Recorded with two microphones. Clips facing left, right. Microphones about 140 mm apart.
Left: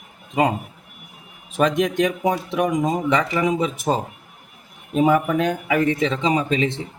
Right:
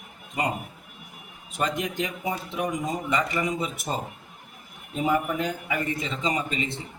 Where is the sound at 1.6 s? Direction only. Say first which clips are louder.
Left 9 dB; 90° left.